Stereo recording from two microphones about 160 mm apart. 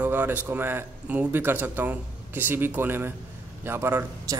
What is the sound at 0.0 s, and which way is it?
A man's voice, 10° right (ahead or behind).